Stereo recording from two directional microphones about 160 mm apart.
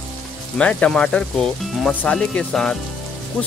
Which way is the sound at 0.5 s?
5° left (ahead or behind).